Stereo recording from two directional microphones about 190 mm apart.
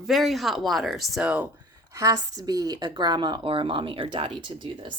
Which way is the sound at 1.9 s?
15° right (ahead or behind).